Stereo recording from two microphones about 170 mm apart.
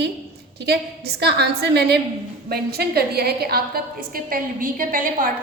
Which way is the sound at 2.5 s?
65° right (ahead or behind).